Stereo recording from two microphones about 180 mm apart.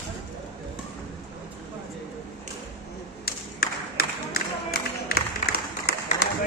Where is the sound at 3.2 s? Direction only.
55° left (ahead or behind).